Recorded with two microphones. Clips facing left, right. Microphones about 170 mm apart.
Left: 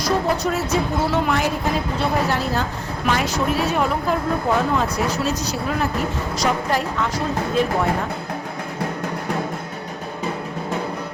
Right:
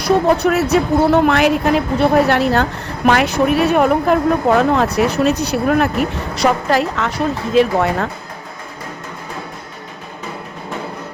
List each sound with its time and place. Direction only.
0.0 s a woman's voice: 65° right (ahead or behind); by 7.9 s 80° right